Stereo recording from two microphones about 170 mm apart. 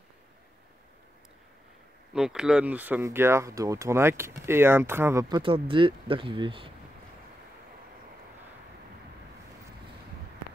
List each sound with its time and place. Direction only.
2.1 s speech: 5° right (ahead or behind)
5.3 s speech: 30° right (ahead or behind)